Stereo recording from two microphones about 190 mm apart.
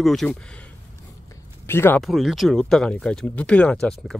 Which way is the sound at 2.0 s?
Centre (ahead or behind).